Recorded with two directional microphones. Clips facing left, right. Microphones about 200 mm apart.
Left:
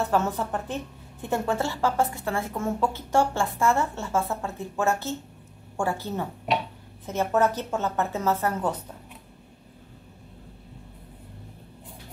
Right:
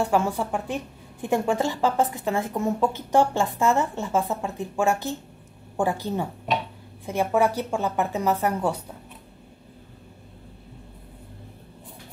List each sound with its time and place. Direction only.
0.0 s a woman's voice: 10° right (ahead or behind)